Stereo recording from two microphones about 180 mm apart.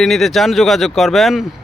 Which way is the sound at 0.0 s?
Centre (ahead or behind).